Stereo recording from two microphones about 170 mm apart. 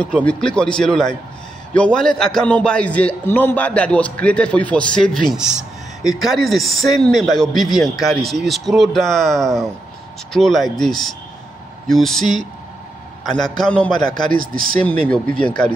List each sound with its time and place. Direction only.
0.0 s a man's voice: 5° left (ahead or behind)
14.3 s speech: 55° right (ahead or behind)
14.8 s a man's voice: 10° left (ahead or behind)